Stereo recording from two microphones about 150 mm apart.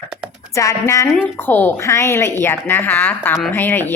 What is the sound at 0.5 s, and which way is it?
A woman's voice, 20° left (ahead or behind).